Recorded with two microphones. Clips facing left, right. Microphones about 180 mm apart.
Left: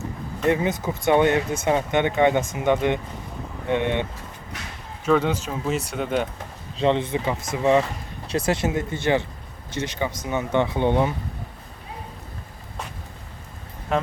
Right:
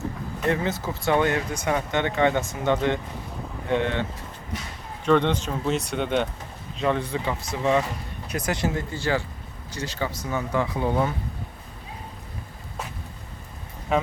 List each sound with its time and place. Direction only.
0.4 s speech: 20° left (ahead or behind)
5.0 s speech: 5° left (ahead or behind)
6.7 s speech: 25° left (ahead or behind)
13.9 s speech: centre (ahead or behind)